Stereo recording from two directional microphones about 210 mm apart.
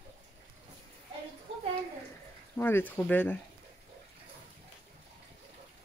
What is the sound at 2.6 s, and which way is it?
Speech, 10° left (ahead or behind).